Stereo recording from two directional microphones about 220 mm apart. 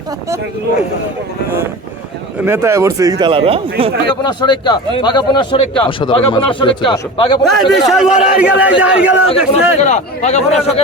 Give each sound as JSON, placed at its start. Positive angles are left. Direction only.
{"t": 2.4, "sound": "speech", "side_deg": -10}
{"t": 4.1, "sound": "speech", "side_deg": 20}
{"t": 7.4, "sound": "a man's voice", "side_deg": 0}
{"t": 9.5, "sound": "a man's voice", "side_deg": 30}